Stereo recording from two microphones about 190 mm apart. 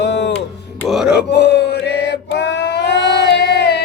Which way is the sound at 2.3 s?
65° left (ahead or behind).